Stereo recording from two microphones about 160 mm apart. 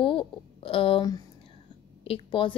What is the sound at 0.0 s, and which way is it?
A woman's voice, 30° left (ahead or behind).